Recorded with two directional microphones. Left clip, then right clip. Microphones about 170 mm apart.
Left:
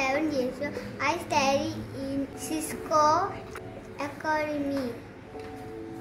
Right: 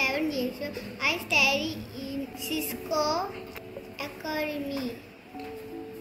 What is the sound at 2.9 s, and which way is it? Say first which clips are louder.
Speech: left 5 dB; 15° left (ahead or behind).